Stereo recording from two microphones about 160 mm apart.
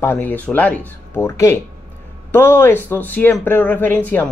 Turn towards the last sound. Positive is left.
turn(degrees=10)  # may be behind; listen again after turning